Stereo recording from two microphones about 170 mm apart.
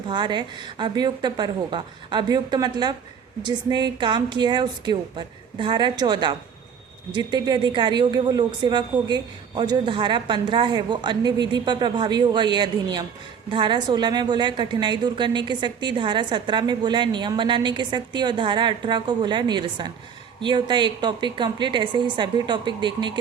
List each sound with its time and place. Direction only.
0.1 s a woman's voice: 25° right (ahead or behind)